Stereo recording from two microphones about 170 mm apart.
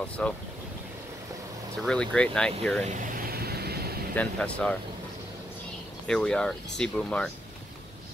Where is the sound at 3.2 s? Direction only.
65° right (ahead or behind).